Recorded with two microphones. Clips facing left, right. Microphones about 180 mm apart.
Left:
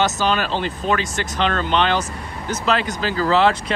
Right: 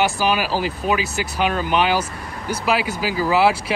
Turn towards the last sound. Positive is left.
turn(degrees=-10)  # may be behind; listen again after turning